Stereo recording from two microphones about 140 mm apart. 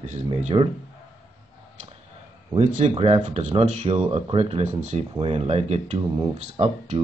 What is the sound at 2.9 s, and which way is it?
Speech, 40° right (ahead or behind).